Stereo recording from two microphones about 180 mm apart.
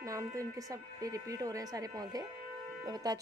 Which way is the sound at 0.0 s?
15° right (ahead or behind).